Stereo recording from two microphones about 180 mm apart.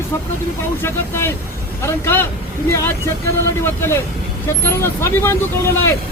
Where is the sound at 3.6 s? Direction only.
15° left (ahead or behind).